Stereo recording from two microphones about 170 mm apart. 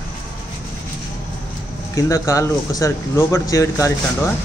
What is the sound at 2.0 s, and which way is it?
Speech, 20° left (ahead or behind).